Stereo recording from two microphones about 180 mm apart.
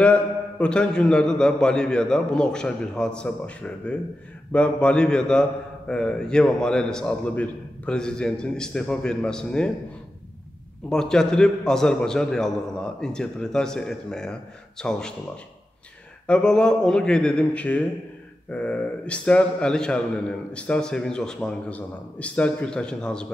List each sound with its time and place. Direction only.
0.0 s a man's voice: 5° left (ahead or behind)
10.9 s a man's voice: 5° left (ahead or behind)
16.3 s a man's voice: 5° left (ahead or behind)